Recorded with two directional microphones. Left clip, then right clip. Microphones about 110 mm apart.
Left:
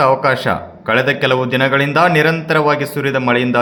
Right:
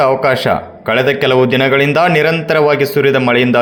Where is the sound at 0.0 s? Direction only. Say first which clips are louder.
Right 2 dB; 30° right (ahead or behind).